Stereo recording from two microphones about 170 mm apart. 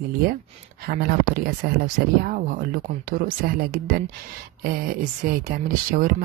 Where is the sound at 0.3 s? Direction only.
65° right (ahead or behind).